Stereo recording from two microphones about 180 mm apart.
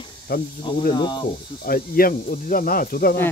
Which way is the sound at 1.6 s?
55° left (ahead or behind).